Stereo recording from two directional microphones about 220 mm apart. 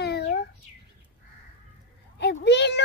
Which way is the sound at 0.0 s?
50° left (ahead or behind).